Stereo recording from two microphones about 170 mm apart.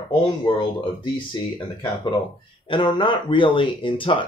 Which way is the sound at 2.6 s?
30° left (ahead or behind).